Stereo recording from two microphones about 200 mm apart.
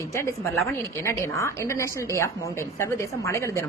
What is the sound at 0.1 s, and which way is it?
A woman's voice, 15° left (ahead or behind).